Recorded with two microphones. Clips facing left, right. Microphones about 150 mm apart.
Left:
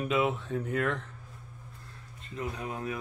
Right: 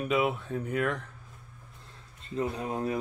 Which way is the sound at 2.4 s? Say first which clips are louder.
Right 5 dB; 30° right (ahead or behind).